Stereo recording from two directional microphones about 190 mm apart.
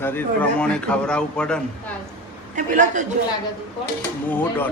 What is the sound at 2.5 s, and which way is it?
Speech, 40° right (ahead or behind).